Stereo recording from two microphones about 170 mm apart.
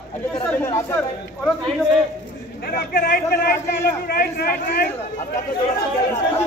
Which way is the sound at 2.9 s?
60° left (ahead or behind).